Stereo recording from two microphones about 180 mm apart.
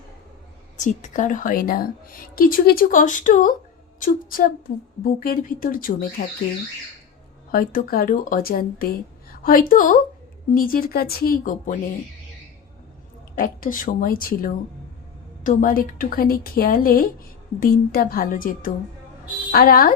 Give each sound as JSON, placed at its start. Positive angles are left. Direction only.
{"t": 0.8, "sound": "a woman's voice", "side_deg": 40}
{"t": 7.5, "sound": "a woman's voice", "side_deg": 50}
{"t": 13.3, "sound": "a woman's voice", "side_deg": 50}